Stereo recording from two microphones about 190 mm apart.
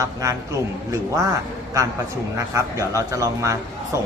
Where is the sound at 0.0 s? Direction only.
15° right (ahead or behind).